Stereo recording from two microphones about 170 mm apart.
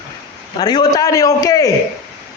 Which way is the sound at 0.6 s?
20° left (ahead or behind).